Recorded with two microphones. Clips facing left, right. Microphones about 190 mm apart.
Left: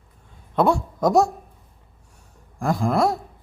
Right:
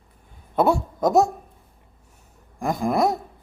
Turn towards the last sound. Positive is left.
turn(degrees=-20)  # may be behind; listen again after turning